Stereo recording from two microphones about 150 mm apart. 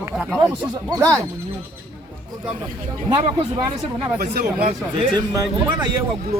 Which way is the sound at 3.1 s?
30° right (ahead or behind).